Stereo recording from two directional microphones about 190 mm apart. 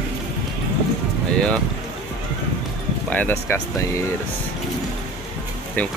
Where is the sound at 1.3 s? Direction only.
5° left (ahead or behind).